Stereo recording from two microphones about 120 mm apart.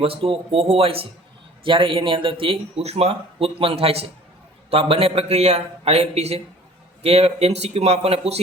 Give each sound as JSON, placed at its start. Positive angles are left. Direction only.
{"t": 0.0, "sound": "a man's voice", "side_deg": -50}